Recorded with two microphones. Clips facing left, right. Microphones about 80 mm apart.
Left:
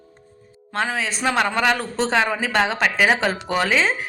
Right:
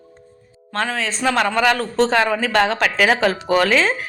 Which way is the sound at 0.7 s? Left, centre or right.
Centre.